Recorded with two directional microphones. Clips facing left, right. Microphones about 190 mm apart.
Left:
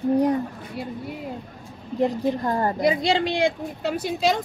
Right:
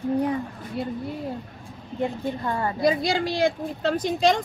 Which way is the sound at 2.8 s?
20° left (ahead or behind).